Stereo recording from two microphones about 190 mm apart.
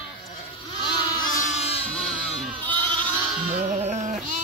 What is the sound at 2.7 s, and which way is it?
Goat, 25° right (ahead or behind).